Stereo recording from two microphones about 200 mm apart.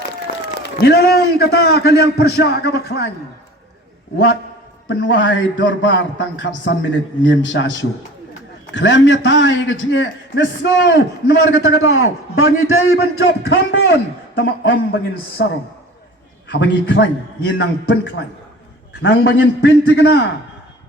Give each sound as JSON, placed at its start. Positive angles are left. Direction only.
{"t": 0.3, "sound": "a sound", "side_deg": 45}
{"t": 0.8, "sound": "a man's voice", "side_deg": 55}
{"t": 4.9, "sound": "a man's voice", "side_deg": 75}
{"t": 8.7, "sound": "a man's voice", "side_deg": 65}
{"t": 11.9, "sound": "a man's voice", "side_deg": 90}
{"t": 13.0, "sound": "speech", "side_deg": 50}
{"t": 13.5, "sound": "a man's voice", "side_deg": 60}
{"t": 15.4, "sound": "a man's voice", "side_deg": 55}
{"t": 16.5, "sound": "a man's voice", "side_deg": 65}